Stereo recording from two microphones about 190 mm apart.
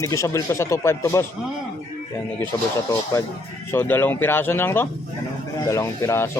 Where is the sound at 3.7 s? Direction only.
10° left (ahead or behind).